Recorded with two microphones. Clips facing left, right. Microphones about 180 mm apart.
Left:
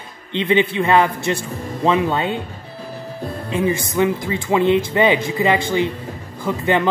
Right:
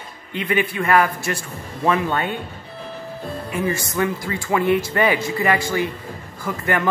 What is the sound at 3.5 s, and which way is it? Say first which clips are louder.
Speech: left 4 dB; 20° left (ahead or behind).